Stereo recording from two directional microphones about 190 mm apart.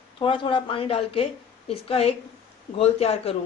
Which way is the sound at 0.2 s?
25° left (ahead or behind).